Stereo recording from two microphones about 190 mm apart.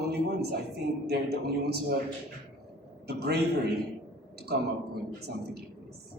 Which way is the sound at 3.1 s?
60° right (ahead or behind).